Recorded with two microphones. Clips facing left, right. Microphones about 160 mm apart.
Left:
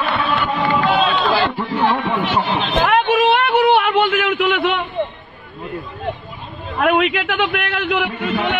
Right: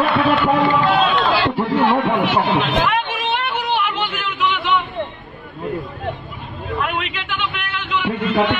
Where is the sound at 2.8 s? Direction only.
55° left (ahead or behind).